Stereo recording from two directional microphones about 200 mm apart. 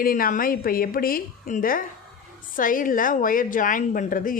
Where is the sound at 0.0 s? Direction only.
45° left (ahead or behind).